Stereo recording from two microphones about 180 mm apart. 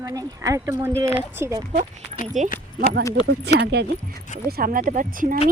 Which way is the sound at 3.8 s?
65° right (ahead or behind).